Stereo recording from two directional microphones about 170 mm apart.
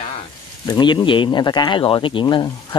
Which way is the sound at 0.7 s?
25° left (ahead or behind).